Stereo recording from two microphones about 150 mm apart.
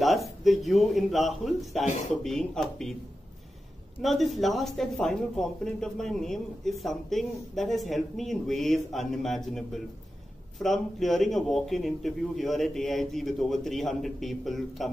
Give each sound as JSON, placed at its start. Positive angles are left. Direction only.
{"t": 0.0, "sound": "a man's voice", "side_deg": 0}
{"t": 1.9, "sound": "speech", "side_deg": 55}
{"t": 2.2, "sound": "a man's voice", "side_deg": 5}
{"t": 4.0, "sound": "a man's voice", "side_deg": 0}